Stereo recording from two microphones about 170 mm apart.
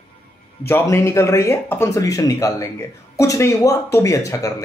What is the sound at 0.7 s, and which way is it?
Speech, 15° left (ahead or behind).